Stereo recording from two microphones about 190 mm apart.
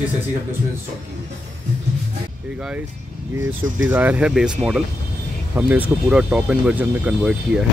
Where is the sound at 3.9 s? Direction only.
10° right (ahead or behind).